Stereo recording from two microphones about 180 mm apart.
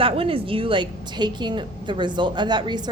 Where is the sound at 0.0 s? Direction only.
30° right (ahead or behind).